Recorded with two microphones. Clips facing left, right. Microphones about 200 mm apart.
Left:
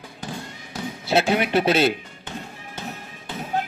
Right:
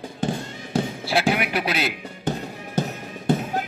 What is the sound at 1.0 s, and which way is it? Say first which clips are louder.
Speech: left 5 dB; 25° left (ahead or behind).